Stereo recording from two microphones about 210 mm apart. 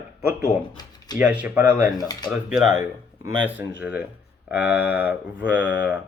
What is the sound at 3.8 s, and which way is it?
Speech, 5° right (ahead or behind).